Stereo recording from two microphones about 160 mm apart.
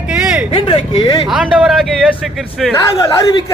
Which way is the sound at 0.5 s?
30° left (ahead or behind).